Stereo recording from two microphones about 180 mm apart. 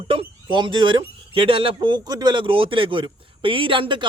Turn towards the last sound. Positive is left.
turn(degrees=-30)  # may be behind; listen again after turning